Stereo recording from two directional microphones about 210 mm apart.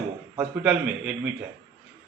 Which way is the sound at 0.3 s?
5° right (ahead or behind).